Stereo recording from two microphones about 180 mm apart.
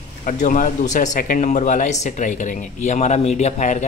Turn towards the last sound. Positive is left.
turn(degrees=40)  # may be behind; listen again after turning